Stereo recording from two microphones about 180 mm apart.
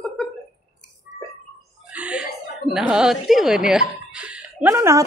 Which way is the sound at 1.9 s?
5° right (ahead or behind).